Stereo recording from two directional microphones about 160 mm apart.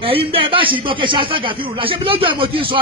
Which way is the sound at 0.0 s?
35° right (ahead or behind).